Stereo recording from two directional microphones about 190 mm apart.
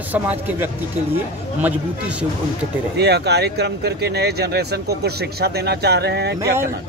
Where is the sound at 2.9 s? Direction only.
60° right (ahead or behind).